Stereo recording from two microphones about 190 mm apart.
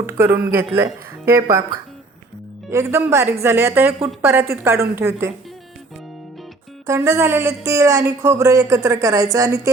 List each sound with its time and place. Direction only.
0.0 s speech: 10° right (ahead or behind)
2.8 s speech: 10° right (ahead or behind)
6.8 s speech: 15° right (ahead or behind)